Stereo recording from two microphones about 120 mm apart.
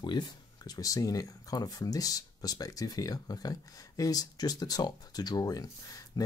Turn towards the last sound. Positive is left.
turn(degrees=30)  # may be behind; listen again after turning